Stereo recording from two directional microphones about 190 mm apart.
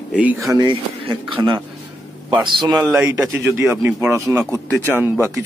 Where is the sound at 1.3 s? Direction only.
25° right (ahead or behind).